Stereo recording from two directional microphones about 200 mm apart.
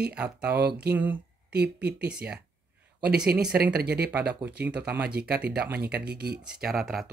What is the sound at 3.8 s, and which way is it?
Speech, 50° right (ahead or behind).